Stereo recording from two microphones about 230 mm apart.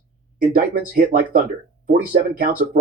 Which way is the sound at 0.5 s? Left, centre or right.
Right.